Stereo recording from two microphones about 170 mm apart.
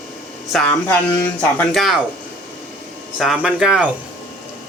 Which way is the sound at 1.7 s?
Centre (ahead or behind).